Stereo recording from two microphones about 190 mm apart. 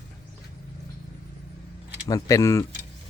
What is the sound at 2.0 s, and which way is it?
Speech, 15° left (ahead or behind).